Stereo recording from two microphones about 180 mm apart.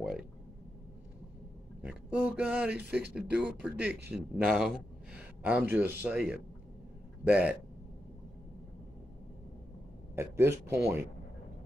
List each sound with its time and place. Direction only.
1.8 s a man's voice: 5° right (ahead or behind)
10.1 s a man's voice: 15° right (ahead or behind)